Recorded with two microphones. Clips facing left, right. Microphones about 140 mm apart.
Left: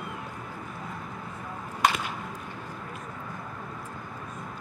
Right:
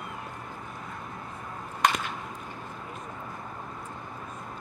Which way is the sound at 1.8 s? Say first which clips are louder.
Even; 5° left (ahead or behind).